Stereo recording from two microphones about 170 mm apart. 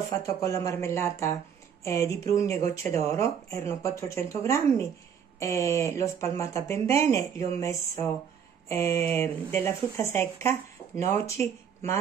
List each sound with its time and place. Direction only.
0.1 s speech: 15° left (ahead or behind)